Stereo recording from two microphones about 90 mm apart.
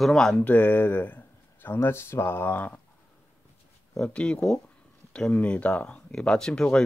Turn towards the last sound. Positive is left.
turn(degrees=10)  # may be behind; listen again after turning